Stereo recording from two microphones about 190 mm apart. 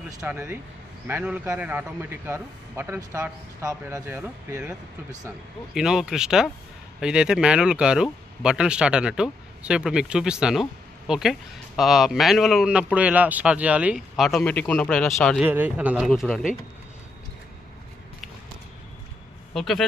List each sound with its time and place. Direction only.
0.2 s a man's voice: 10° right (ahead or behind)
5.8 s a man's voice: 5° right (ahead or behind)
19.5 s speech: centre (ahead or behind)